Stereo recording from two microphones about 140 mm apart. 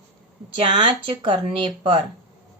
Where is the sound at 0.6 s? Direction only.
35° right (ahead or behind).